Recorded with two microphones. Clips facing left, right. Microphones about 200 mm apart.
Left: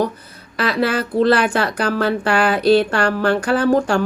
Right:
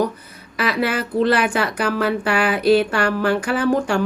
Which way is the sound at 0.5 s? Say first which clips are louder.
Left 2 dB; 30° left (ahead or behind).